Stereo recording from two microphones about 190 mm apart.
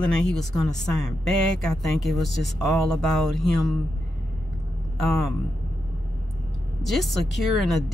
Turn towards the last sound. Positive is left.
turn(degrees=0)  # may be behind; listen again after turning